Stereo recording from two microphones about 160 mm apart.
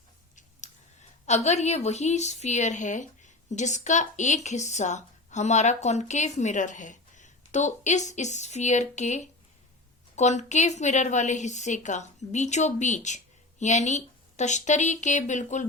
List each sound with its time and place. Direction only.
1.3 s a woman's voice: 45° left (ahead or behind)